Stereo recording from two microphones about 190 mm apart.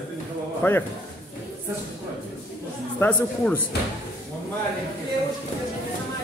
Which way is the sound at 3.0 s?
5° left (ahead or behind).